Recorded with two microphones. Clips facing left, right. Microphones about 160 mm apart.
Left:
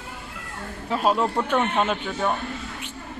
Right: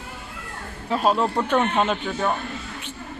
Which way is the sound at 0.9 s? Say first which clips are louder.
Right 1 dB; 5° left (ahead or behind).